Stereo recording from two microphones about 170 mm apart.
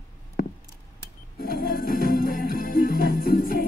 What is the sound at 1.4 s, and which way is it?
Music, 60° left (ahead or behind).